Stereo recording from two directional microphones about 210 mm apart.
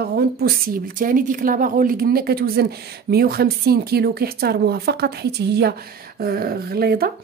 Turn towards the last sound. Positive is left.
turn(degrees=-45)  # may be behind; listen again after turning